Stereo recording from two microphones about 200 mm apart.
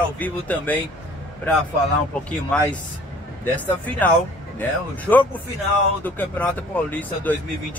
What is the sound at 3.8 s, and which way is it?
Speech, 10° left (ahead or behind).